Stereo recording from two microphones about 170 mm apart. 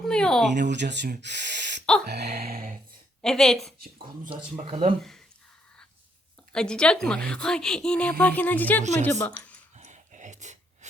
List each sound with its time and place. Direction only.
0.0 s a woman's voice: 5° left (ahead or behind)
0.7 s speech: 90° right
1.2 s gasp: 90° right
2.0 s a sound: 75° right (ahead or behind)
2.4 s speech: 60° right (ahead or behind)
3.2 s a woman's voice: centre (ahead or behind)
3.8 s speech: 60° right (ahead or behind)
4.6 s speech: 35° right (ahead or behind)
6.5 s a woman's voice: 5° left (ahead or behind)
9.7 s a sound: 45° right (ahead or behind)